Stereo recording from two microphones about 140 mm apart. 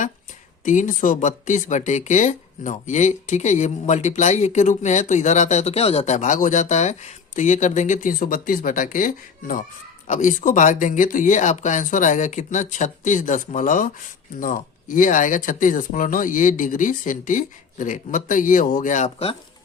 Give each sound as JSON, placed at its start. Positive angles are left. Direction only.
{"t": 0.6, "sound": "speech", "side_deg": 65}
{"t": 10.1, "sound": "speech", "side_deg": 65}